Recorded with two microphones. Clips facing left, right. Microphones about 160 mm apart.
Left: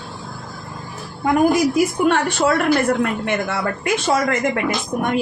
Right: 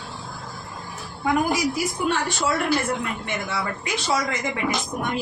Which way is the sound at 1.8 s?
60° left (ahead or behind).